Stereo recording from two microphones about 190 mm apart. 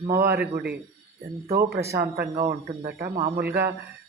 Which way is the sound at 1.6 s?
15° right (ahead or behind).